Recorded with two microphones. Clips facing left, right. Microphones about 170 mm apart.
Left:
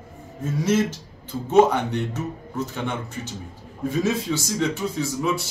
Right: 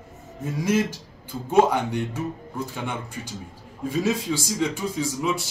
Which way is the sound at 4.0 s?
10° right (ahead or behind).